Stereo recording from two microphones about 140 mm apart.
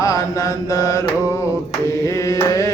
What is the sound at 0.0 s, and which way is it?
Mantra, 25° left (ahead or behind).